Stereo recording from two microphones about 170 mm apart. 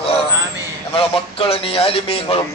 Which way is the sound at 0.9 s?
35° left (ahead or behind).